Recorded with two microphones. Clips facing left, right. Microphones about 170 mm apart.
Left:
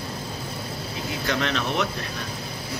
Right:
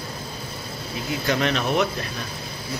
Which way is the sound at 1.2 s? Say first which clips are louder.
Right 3 dB; 10° right (ahead or behind).